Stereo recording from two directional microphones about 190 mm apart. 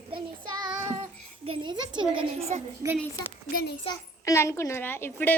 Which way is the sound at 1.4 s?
25° right (ahead or behind).